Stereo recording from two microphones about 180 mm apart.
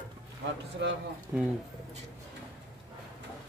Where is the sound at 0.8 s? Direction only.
75° right (ahead or behind).